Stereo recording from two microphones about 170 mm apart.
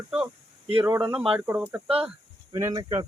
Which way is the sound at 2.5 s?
20° right (ahead or behind).